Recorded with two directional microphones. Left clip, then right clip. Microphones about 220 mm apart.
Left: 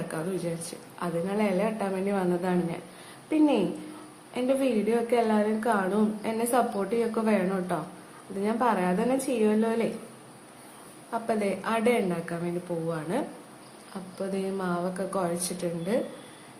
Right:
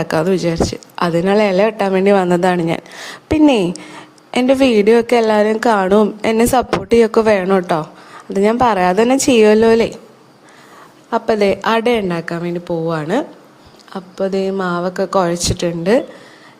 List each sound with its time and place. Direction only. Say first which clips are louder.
0.1 s a woman's voice: right 17 dB; 50° right (ahead or behind)
11.1 s a woman's voice: right 14 dB; 45° right (ahead or behind)